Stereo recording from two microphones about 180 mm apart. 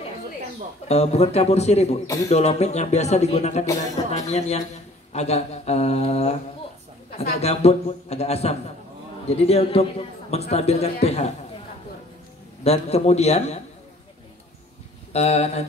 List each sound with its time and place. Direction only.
0.8 s a man's voice: 35° left (ahead or behind)
7.4 s a man's voice: 35° left (ahead or behind)
12.6 s a man's voice: 35° left (ahead or behind)
15.1 s a man's voice: 35° left (ahead or behind)